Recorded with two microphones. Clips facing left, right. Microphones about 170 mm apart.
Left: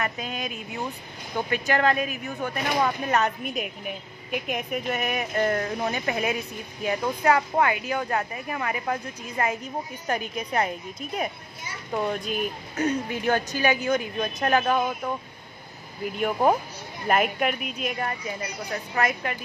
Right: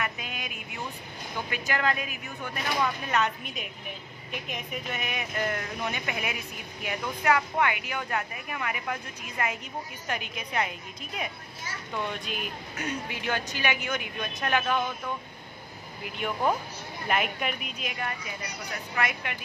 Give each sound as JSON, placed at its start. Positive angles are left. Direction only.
{"t": 0.0, "sound": "speech", "side_deg": 40}
{"t": 1.5, "sound": "speech", "side_deg": 40}
{"t": 4.5, "sound": "speech", "side_deg": 45}
{"t": 16.2, "sound": "speech", "side_deg": 45}